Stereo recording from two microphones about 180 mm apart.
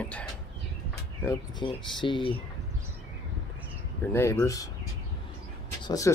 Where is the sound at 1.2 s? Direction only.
20° left (ahead or behind).